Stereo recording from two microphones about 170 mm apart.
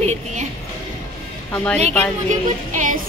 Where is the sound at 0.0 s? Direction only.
40° right (ahead or behind).